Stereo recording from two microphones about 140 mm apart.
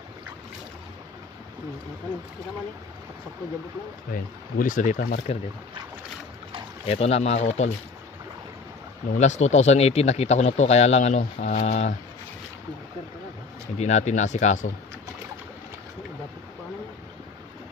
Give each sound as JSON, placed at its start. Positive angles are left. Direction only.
{"t": 4.1, "sound": "speech", "side_deg": 75}
{"t": 6.9, "sound": "speech", "side_deg": 45}
{"t": 9.2, "sound": "speech", "side_deg": 55}
{"t": 13.7, "sound": "speech", "side_deg": 55}